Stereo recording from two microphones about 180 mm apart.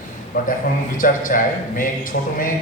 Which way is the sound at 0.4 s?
50° left (ahead or behind).